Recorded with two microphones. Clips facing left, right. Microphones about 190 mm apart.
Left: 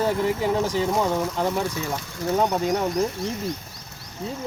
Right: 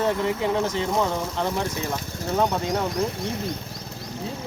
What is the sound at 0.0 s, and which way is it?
Speech, 5° left (ahead or behind).